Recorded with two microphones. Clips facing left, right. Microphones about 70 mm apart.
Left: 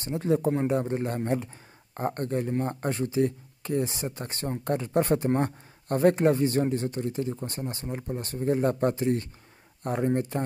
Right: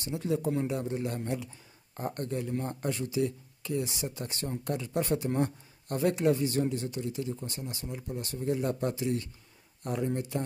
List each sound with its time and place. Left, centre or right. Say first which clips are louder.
0.0 s a man's voice: left 5 dB; left